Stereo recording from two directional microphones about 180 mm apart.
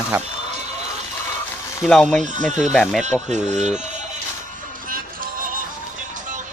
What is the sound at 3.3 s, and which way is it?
Speech, 40° right (ahead or behind).